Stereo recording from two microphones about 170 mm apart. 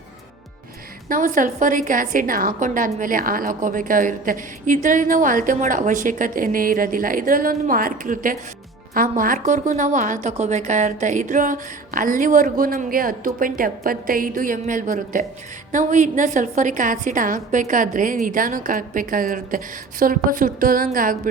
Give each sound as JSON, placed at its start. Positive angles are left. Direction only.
{"t": 1.0, "sound": "a woman's voice", "side_deg": -50}